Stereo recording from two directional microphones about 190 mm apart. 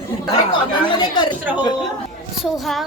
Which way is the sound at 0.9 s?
25° left (ahead or behind).